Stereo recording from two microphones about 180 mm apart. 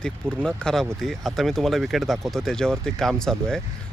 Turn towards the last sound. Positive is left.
turn(degrees=5)  # may be behind; listen again after turning